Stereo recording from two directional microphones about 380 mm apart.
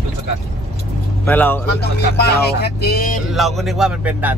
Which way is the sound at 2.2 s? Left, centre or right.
Left.